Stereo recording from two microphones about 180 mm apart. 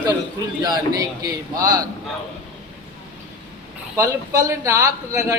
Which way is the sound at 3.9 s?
15° right (ahead or behind).